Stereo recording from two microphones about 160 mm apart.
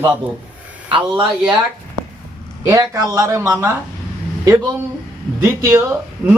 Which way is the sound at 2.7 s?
20° right (ahead or behind).